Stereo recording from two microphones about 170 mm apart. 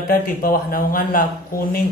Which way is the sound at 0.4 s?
55° left (ahead or behind).